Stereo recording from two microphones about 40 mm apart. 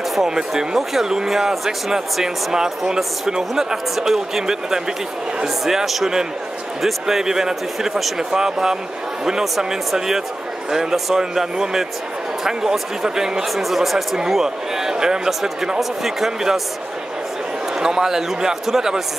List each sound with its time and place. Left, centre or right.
0.5 s speech: centre
9.9 s speech: centre
14.1 s speech: centre
17.7 s speech: centre